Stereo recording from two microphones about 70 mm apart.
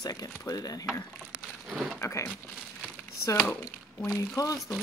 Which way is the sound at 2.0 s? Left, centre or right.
Left.